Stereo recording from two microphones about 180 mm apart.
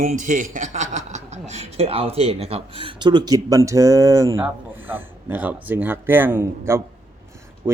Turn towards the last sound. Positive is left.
turn(degrees=-15)  # may be behind; listen again after turning